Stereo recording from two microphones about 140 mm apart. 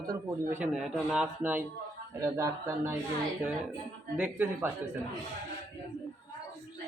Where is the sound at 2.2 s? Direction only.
25° right (ahead or behind).